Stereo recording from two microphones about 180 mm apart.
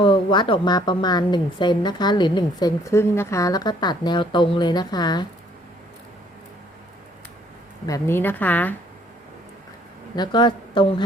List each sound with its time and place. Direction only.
0.0 s a woman's voice: 30° left (ahead or behind)
7.9 s a woman's voice: 15° left (ahead or behind)
10.2 s a woman's voice: 25° left (ahead or behind)